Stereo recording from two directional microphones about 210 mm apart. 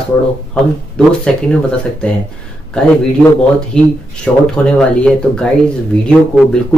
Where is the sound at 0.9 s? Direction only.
5° left (ahead or behind).